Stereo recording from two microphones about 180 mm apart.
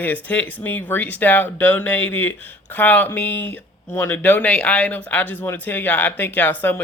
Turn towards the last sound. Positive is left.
turn(degrees=10)  # may be behind; listen again after turning